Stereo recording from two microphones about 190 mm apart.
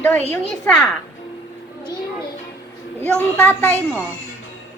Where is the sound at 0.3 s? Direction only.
5° left (ahead or behind).